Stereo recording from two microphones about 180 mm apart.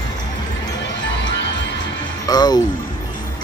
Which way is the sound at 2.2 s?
20° left (ahead or behind).